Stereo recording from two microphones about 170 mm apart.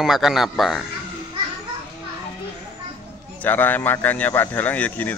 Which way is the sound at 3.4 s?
10° left (ahead or behind).